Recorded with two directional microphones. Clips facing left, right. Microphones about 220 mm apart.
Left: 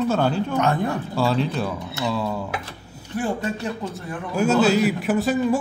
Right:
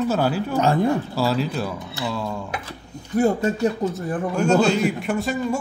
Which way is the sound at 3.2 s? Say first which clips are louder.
Right 6 dB; 40° right (ahead or behind).